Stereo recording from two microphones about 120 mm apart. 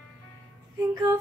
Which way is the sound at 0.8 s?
30° right (ahead or behind).